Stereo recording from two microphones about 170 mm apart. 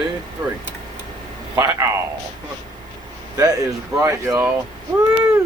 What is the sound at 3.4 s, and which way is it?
Speech, 20° right (ahead or behind).